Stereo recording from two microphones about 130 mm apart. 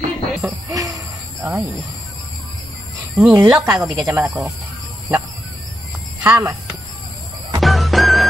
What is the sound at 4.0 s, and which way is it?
Speech, 20° right (ahead or behind).